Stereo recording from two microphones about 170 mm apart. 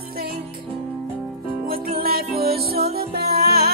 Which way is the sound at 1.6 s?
60° right (ahead or behind).